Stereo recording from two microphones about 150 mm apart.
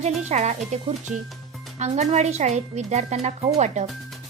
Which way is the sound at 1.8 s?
50° right (ahead or behind).